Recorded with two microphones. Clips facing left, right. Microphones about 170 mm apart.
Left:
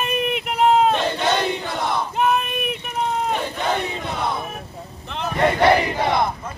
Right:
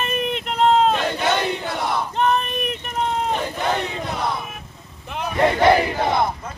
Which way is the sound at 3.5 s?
Centre (ahead or behind).